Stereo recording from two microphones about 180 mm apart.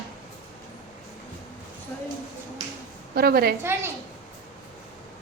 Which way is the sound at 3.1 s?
60° right (ahead or behind).